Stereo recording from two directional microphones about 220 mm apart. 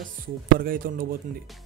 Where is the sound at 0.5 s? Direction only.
40° right (ahead or behind).